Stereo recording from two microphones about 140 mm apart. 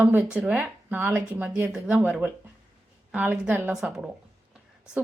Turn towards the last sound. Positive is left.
turn(degrees=-5)  # may be behind; listen again after turning